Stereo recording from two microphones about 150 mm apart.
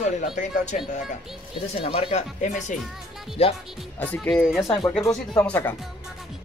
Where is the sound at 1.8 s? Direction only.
35° left (ahead or behind).